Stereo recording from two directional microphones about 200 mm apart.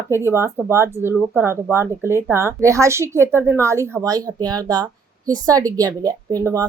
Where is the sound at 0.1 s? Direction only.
10° right (ahead or behind).